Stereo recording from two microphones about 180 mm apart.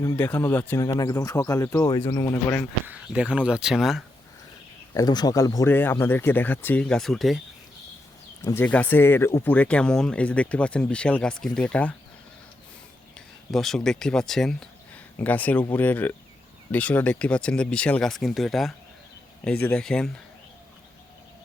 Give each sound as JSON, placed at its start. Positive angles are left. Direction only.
{"t": 0.0, "sound": "speech", "side_deg": 15}
{"t": 2.8, "sound": "speech", "side_deg": -5}
{"t": 4.9, "sound": "speech", "side_deg": 20}
{"t": 8.4, "sound": "speech", "side_deg": 10}
{"t": 13.1, "sound": "speech", "side_deg": 0}